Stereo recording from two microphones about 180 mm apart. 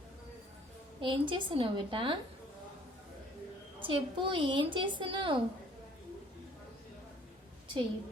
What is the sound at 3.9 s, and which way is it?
A woman's voice, 30° right (ahead or behind).